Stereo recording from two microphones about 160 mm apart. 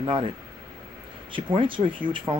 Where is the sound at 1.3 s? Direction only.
30° right (ahead or behind).